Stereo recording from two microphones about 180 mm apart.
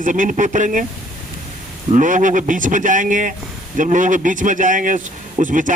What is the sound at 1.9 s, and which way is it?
A man's voice, 45° right (ahead or behind).